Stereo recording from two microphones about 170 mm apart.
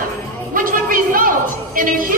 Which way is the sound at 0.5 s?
55° right (ahead or behind).